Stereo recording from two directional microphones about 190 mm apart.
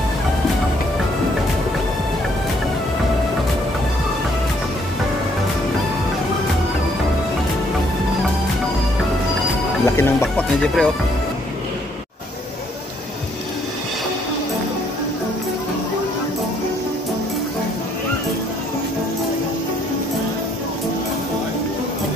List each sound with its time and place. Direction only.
9.8 s music: 15° left (ahead or behind)
10.2 s speech: centre (ahead or behind)